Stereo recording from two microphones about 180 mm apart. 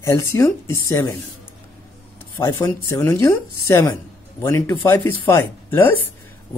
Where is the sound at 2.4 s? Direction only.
15° left (ahead or behind).